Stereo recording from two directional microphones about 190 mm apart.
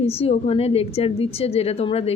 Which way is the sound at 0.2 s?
30° left (ahead or behind).